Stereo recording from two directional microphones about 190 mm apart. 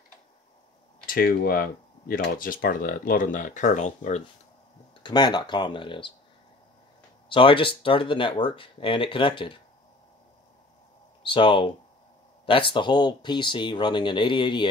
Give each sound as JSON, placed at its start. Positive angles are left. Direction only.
{"t": 1.0, "sound": "speech", "side_deg": 50}
{"t": 5.0, "sound": "speech", "side_deg": 20}
{"t": 7.2, "sound": "speech", "side_deg": 25}
{"t": 11.2, "sound": "speech", "side_deg": 25}